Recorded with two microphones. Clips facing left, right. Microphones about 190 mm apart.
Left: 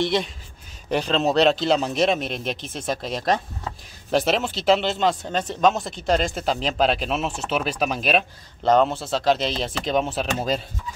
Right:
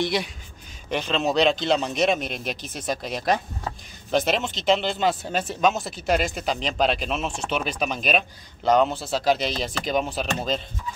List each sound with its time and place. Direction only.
0.0 s speech: 5° right (ahead or behind)
0.8 s speech: 35° left (ahead or behind)
1.1 s speech: centre (ahead or behind)